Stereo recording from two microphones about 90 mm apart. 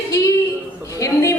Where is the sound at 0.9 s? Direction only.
35° left (ahead or behind).